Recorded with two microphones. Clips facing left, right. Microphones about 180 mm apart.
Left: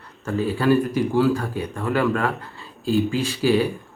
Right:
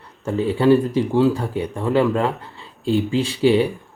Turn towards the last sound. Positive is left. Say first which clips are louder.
# right 3 dB
turn(degrees=-25)  # may be behind; listen again after turning